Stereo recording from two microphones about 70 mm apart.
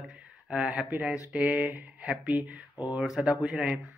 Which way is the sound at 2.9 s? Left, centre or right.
Centre.